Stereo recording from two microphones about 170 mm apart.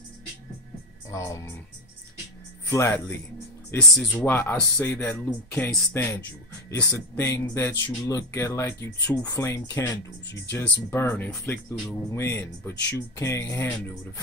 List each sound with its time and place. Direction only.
1.1 s speech: 20° left (ahead or behind)
2.7 s speech: 15° left (ahead or behind)